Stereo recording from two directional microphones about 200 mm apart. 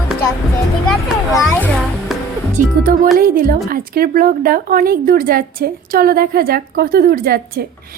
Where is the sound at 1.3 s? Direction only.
5° left (ahead or behind).